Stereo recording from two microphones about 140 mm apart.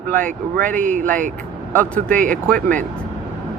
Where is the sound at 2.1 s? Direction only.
70° right (ahead or behind).